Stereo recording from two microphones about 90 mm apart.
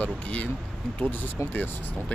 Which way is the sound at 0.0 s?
15° left (ahead or behind).